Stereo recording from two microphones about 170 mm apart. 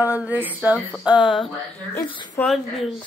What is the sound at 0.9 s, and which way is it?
Speech, 5° right (ahead or behind).